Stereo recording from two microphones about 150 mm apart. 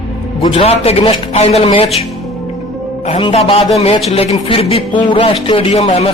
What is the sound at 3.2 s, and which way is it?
Speech, 40° left (ahead or behind).